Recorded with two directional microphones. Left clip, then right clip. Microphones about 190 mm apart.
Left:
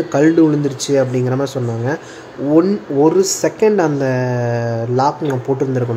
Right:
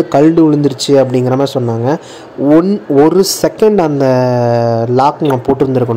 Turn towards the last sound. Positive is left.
turn(degrees=-25)  # may be behind; listen again after turning